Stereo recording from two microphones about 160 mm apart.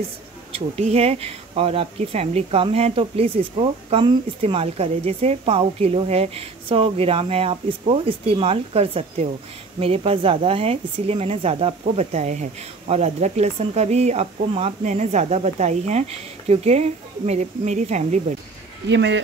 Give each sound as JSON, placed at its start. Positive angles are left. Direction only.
{"t": 0.5, "sound": "speech", "side_deg": -40}
{"t": 18.9, "sound": "speech", "side_deg": -90}